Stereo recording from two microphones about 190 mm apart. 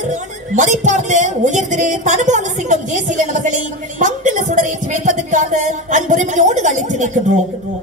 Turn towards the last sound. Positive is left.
turn(degrees=-40)  # may be behind; listen again after turning